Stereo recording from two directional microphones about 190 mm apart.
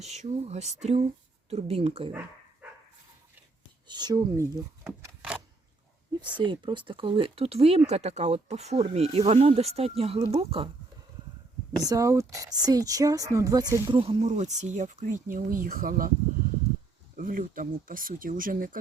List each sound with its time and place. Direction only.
0.0 s speech: 35° right (ahead or behind)
2.6 s dog: 10° right (ahead or behind)
3.8 s speech: 20° right (ahead or behind)
6.4 s speech: 25° right (ahead or behind)
11.8 s speech: 20° right (ahead or behind); by 16.1 s 50° right (ahead or behind)
17.2 s speech: 45° right (ahead or behind)